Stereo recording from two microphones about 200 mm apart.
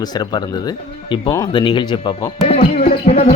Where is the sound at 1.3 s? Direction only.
20° left (ahead or behind).